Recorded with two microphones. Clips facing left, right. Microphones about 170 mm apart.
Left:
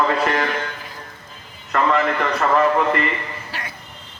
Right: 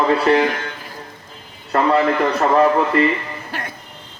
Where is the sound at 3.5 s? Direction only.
50° right (ahead or behind).